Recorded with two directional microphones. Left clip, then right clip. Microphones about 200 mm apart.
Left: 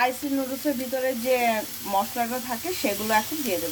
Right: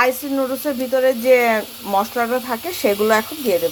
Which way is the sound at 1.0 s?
15° right (ahead or behind).